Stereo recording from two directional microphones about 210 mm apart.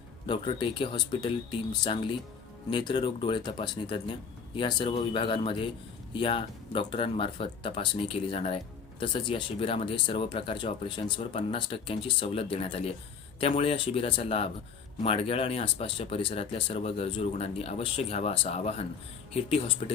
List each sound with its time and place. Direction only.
0.3 s speech: 25° left (ahead or behind)